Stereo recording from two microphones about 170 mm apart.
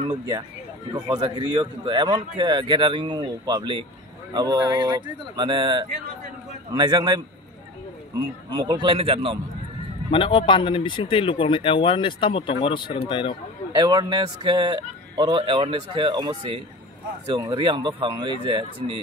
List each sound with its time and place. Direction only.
0.0 s a man's voice: 25° right (ahead or behind)
8.5 s a man's voice: 25° right (ahead or behind)
10.1 s speech: 30° left (ahead or behind)
13.7 s a man's voice: 20° right (ahead or behind)